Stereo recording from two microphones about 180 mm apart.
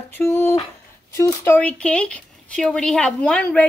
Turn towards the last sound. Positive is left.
turn(degrees=5)  # may be behind; listen again after turning